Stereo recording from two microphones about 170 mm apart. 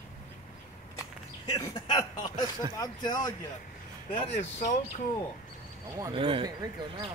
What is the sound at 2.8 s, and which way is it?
Speech, 25° left (ahead or behind).